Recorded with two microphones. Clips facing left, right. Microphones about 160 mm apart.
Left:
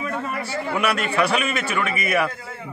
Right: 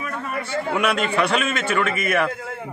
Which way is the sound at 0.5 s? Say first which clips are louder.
Right 2 dB; 5° left (ahead or behind).